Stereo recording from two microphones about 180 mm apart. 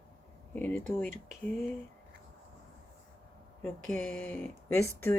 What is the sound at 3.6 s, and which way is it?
Speech, 5° left (ahead or behind).